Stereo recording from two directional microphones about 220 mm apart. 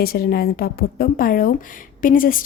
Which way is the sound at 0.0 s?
45° left (ahead or behind).